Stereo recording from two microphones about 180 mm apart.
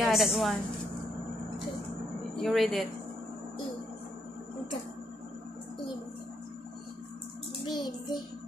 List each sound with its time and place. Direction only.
0.0 s a woman's voice: centre (ahead or behind)
2.4 s a woman's voice: centre (ahead or behind)
7.6 s child singing: 25° left (ahead or behind)